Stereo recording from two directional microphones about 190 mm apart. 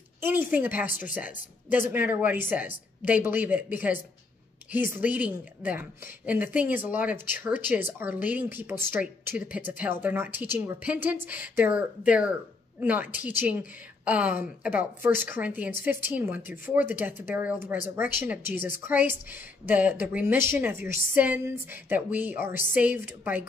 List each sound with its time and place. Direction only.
0.2 s speech: 10° right (ahead or behind)
0.8 s speech: 45° left (ahead or behind)
1.1 s speech: 10° right (ahead or behind)